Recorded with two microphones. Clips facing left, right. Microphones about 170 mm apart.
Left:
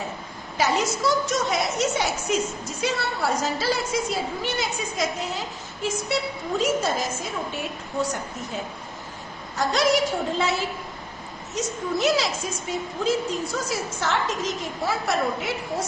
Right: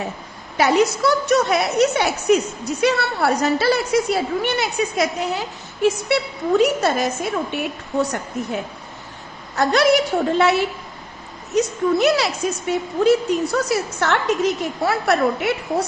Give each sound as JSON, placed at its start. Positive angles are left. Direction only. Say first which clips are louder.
{"t": 0.5, "sound": "a woman's voice", "louder": "right 7 dB", "side_deg": -65}
{"t": 9.6, "sound": "a woman's voice", "louder": "right 5 dB", "side_deg": -65}